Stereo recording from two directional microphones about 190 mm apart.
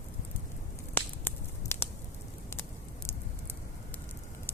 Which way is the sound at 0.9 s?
10° left (ahead or behind).